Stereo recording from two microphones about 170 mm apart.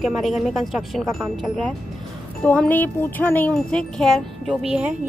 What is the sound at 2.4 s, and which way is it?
Speech, 10° left (ahead or behind).